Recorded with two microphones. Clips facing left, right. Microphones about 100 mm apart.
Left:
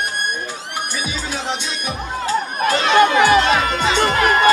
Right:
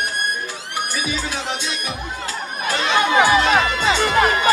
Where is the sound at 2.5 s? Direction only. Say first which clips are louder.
Left 4 dB; 50° left (ahead or behind).